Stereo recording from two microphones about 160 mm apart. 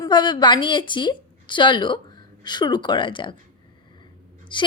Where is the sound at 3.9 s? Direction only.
30° left (ahead or behind).